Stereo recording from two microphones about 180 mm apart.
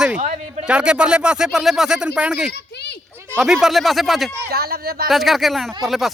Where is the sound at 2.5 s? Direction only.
70° left (ahead or behind).